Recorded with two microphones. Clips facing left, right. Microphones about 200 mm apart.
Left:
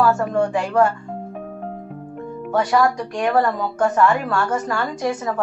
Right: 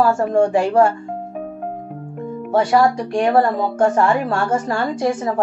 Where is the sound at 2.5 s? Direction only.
30° right (ahead or behind).